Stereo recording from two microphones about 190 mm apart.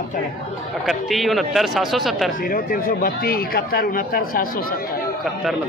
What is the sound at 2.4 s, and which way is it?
Speech, 50° left (ahead or behind).